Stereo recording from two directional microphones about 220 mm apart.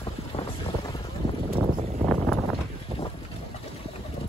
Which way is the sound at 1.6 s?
Centre (ahead or behind).